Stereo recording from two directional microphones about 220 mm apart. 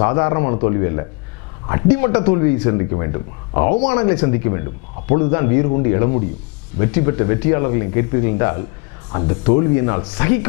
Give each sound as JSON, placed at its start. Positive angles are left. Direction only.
{"t": 0.0, "sound": "speech", "side_deg": 20}
{"t": 3.8, "sound": "speech", "side_deg": 10}